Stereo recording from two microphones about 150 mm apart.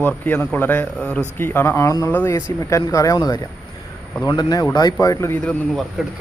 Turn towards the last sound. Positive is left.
turn(degrees=5)  # may be behind; listen again after turning